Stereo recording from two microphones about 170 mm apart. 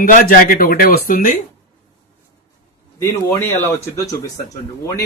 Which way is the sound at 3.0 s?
20° left (ahead or behind).